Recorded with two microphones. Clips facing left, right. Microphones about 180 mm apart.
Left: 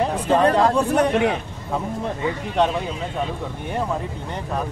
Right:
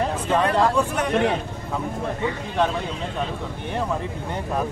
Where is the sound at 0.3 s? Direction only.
35° left (ahead or behind).